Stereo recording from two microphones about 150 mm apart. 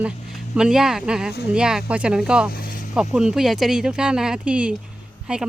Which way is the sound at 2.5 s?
75° left (ahead or behind).